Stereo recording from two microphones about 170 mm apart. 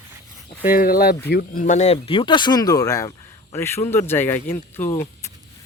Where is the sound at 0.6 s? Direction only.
60° left (ahead or behind).